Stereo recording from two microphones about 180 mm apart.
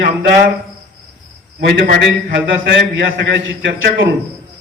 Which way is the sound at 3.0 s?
80° right.